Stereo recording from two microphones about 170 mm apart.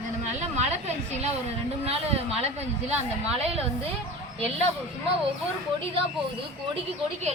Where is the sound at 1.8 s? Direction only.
35° right (ahead or behind).